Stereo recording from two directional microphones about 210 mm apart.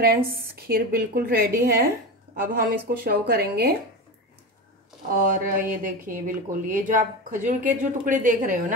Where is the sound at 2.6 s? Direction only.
45° right (ahead or behind).